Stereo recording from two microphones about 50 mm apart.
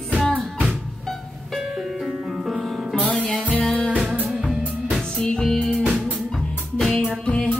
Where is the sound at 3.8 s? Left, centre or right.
Right.